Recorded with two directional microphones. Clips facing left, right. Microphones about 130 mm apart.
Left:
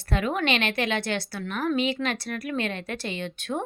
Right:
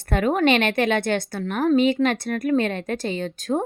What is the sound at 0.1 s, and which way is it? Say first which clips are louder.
A woman's voice: right 6 dB; 45° right (ahead or behind).